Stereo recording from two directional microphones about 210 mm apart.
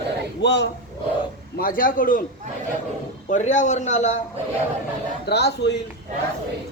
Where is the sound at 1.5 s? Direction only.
45° left (ahead or behind).